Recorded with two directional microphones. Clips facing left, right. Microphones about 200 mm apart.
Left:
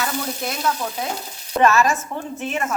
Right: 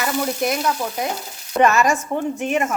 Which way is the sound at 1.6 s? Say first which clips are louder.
Right 1 dB; 15° right (ahead or behind).